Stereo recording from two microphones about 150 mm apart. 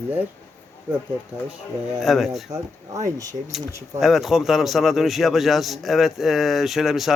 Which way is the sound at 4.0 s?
Centre (ahead or behind).